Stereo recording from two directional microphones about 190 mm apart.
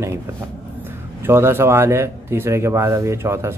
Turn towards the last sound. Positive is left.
turn(degrees=-15)  # may be behind; listen again after turning